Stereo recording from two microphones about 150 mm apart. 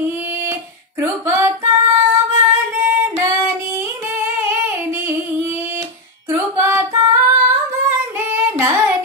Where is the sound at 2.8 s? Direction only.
15° right (ahead or behind).